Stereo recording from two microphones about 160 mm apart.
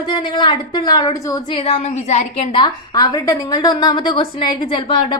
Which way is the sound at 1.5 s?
40° left (ahead or behind).